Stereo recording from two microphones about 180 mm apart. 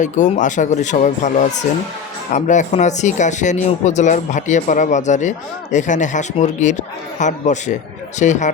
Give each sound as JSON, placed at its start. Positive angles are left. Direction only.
{"t": 0.0, "sound": "speech", "side_deg": 45}